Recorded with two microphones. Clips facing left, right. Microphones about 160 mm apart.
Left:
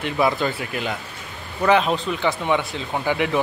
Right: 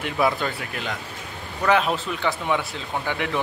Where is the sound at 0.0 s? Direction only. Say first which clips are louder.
Left 2 dB; centre (ahead or behind).